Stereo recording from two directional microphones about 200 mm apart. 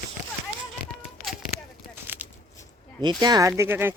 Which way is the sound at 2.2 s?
10° right (ahead or behind).